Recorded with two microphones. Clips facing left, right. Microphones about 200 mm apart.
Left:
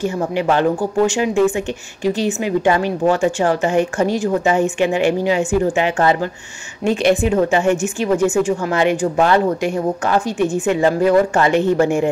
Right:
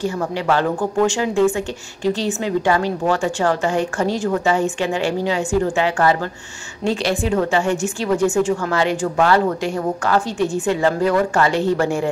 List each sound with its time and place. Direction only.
0.0 s a woman's voice: 20° left (ahead or behind)